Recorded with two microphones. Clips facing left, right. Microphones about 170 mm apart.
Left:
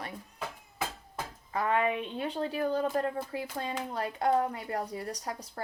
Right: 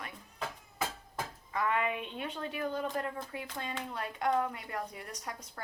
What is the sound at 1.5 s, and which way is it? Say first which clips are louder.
Speech: left 4 dB; 35° left (ahead or behind).